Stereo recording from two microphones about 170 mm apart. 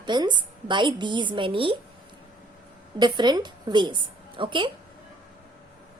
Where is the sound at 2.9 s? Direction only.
25° right (ahead or behind).